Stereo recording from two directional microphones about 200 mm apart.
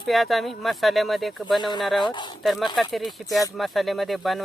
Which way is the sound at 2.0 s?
20° left (ahead or behind).